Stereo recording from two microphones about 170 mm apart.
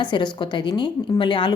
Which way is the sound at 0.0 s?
25° left (ahead or behind).